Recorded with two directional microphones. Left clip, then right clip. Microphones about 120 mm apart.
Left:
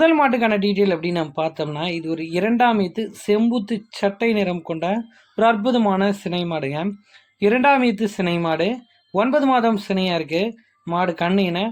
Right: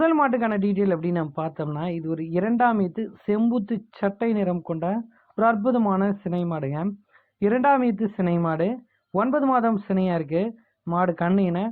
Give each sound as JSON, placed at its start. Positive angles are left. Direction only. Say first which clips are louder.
{"t": 0.0, "sound": "speech", "louder": "left 5 dB", "side_deg": 25}